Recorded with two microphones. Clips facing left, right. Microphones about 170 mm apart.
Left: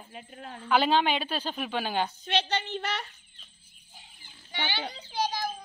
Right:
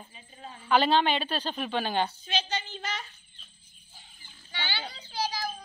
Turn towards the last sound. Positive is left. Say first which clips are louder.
# left 2 dB
turn(degrees=20)  # may be behind; listen again after turning